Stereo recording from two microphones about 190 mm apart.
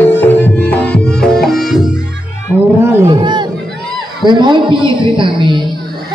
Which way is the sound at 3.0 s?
25° right (ahead or behind).